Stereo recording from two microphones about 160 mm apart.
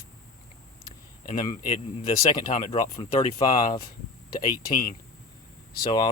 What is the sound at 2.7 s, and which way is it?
Speech, 30° left (ahead or behind).